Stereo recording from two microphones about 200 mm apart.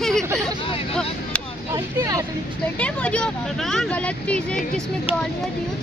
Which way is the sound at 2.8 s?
5° left (ahead or behind).